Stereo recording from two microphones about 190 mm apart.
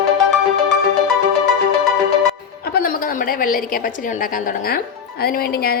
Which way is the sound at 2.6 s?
55° left (ahead or behind).